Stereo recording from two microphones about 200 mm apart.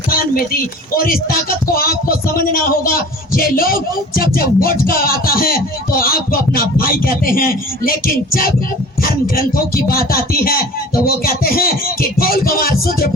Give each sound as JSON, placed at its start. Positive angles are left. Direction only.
{"t": 0.1, "sound": "speech", "side_deg": 45}